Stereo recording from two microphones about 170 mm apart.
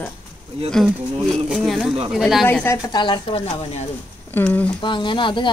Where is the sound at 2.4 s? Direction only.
10° left (ahead or behind).